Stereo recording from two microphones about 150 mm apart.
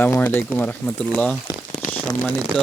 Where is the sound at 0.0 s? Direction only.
10° left (ahead or behind).